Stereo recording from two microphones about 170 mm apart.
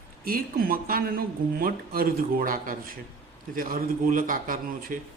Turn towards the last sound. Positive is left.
turn(degrees=-55)  # may be behind; listen again after turning